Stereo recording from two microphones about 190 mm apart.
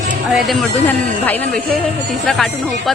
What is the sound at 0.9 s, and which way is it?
Speech, 10° left (ahead or behind).